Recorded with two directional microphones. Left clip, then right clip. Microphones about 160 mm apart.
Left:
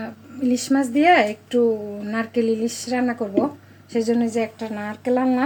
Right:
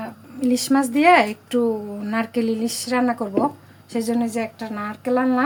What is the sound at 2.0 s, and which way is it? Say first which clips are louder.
Speech: left 1 dB; 35° right (ahead or behind).